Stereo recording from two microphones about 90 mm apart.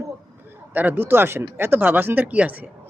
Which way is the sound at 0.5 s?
20° right (ahead or behind).